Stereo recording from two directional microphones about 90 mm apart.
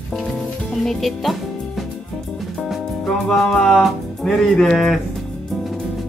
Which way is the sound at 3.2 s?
5° left (ahead or behind).